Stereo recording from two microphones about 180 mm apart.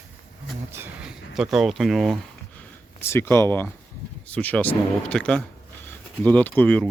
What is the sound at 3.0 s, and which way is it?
Speech, 15° left (ahead or behind).